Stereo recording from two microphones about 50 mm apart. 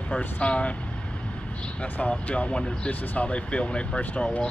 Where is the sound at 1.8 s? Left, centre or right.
Left.